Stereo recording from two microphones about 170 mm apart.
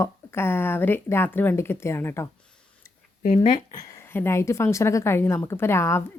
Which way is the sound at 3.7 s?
15° left (ahead or behind).